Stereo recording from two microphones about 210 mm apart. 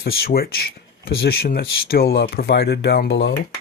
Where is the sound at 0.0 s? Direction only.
45° left (ahead or behind).